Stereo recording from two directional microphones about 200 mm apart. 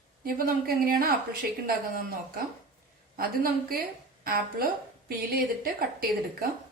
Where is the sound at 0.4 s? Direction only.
45° right (ahead or behind).